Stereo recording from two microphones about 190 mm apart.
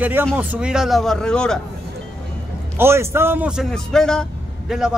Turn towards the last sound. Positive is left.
turn(degrees=0)  # may be behind; listen again after turning